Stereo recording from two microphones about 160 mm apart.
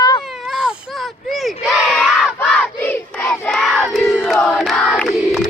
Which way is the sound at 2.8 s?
10° left (ahead or behind).